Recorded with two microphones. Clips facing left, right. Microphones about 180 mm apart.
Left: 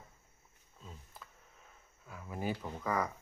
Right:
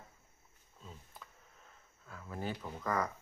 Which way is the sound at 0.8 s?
Centre (ahead or behind).